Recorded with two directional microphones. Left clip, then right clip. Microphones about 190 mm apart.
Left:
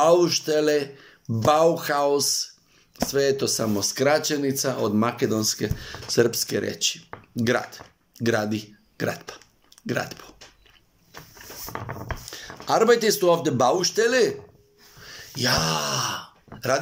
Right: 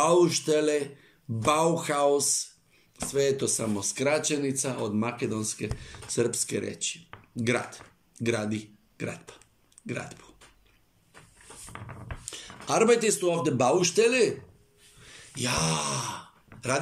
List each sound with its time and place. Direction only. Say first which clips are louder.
0.0 s speech: left 4 dB; 15° right (ahead or behind)
12.3 s speech: left 6 dB; 15° right (ahead or behind)